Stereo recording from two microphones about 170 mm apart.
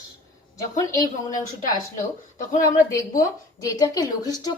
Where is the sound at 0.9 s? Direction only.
20° left (ahead or behind).